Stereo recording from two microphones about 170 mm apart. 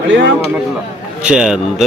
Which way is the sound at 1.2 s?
5° right (ahead or behind).